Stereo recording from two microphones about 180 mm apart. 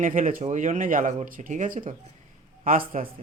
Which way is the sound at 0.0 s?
45° right (ahead or behind).